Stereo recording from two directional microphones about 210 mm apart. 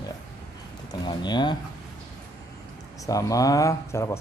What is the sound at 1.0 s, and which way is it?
Speech, 20° left (ahead or behind).